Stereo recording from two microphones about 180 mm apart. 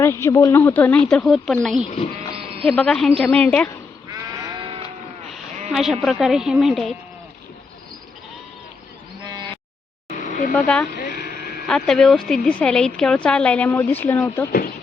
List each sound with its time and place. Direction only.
0.0 s a woman's voice: 15° left (ahead or behind)
2.3 s sheep: 30° right (ahead or behind)
2.6 s a woman's voice: 5° left (ahead or behind)
4.1 s sheep: 25° right (ahead or behind)
5.7 s speech: centre (ahead or behind)
9.2 s sheep: 25° right (ahead or behind)
10.1 s vehicle: 45° left (ahead or behind)
10.5 s a woman's voice: 5° left (ahead or behind)